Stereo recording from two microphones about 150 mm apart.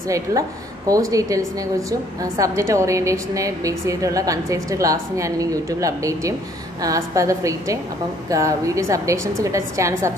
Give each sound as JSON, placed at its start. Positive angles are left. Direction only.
{"t": 0.1, "sound": "a woman's voice", "side_deg": -25}